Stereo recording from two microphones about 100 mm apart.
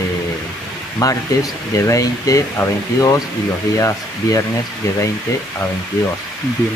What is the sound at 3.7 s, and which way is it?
Speech, 30° left (ahead or behind).